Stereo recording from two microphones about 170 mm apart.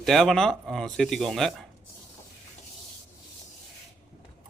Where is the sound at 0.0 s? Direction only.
Centre (ahead or behind).